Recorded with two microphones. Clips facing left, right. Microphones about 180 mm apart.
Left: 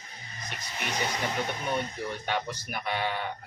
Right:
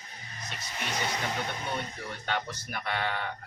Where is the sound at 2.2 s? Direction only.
10° left (ahead or behind).